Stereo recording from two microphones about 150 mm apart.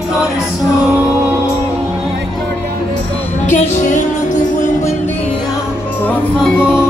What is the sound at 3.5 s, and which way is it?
Music, 55° left (ahead or behind).